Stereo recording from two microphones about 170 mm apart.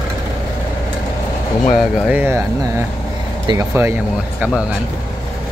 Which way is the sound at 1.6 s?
Centre (ahead or behind).